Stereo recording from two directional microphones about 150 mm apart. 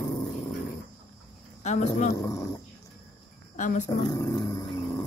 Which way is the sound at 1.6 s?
50° left (ahead or behind).